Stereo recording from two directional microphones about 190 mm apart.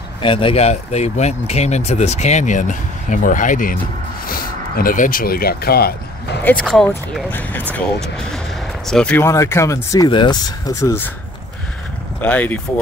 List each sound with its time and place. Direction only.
0.2 s speech: 25° left (ahead or behind); by 5.9 s 55° left (ahead or behind)
6.4 s speech: 5° left (ahead or behind)
8.8 s speech: 5° left (ahead or behind)
12.2 s speech: 10° left (ahead or behind)